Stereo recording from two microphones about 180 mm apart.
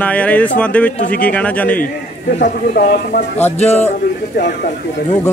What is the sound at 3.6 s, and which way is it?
Speech, 35° left (ahead or behind).